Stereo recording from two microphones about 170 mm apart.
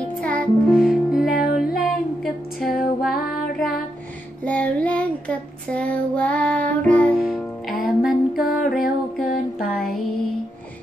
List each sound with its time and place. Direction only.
0.2 s music: 5° left (ahead or behind)
1.2 s music: 55° left (ahead or behind)
1.5 s music: centre (ahead or behind)
4.5 s child singing: 10° left (ahead or behind)
8.4 s music: 60° left (ahead or behind)
8.8 s a sound: 60° left (ahead or behind)